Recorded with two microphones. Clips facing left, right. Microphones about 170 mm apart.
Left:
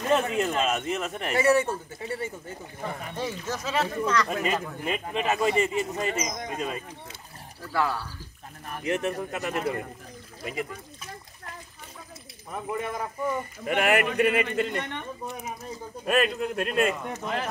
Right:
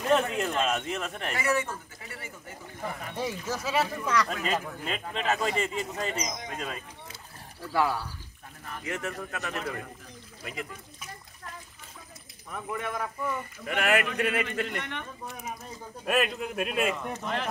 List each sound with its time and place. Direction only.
0.0 s speech: 5° left (ahead or behind)
1.3 s speech: 30° left (ahead or behind)
3.2 s speech: 5° right (ahead or behind)
4.3 s speech: 5° left (ahead or behind)
7.7 s speech: 15° right (ahead or behind)
8.8 s a man's voice: 20° left (ahead or behind)
9.6 s speech: 30° left (ahead or behind)
12.4 s a man's voice: 25° left (ahead or behind)
16.1 s speech: 5° right (ahead or behind)